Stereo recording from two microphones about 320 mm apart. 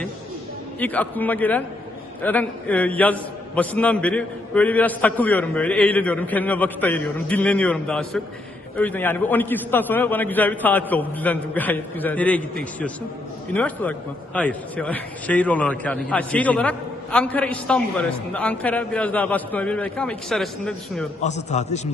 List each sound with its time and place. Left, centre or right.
0.8 s a man's voice: centre
21.2 s a man's voice: left